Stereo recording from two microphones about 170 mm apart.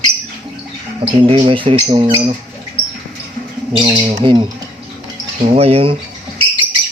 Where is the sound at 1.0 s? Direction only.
30° right (ahead or behind).